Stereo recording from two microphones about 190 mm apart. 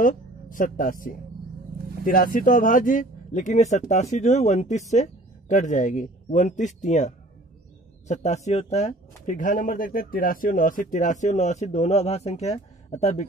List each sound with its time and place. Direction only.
0.0 s speech: 45° left (ahead or behind)